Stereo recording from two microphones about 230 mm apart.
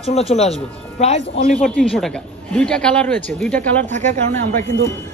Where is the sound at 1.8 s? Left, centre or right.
Centre.